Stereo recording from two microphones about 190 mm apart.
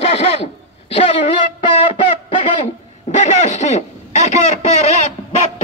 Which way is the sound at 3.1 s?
40° left (ahead or behind).